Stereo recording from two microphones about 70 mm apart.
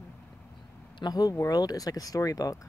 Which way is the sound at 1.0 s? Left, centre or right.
Left.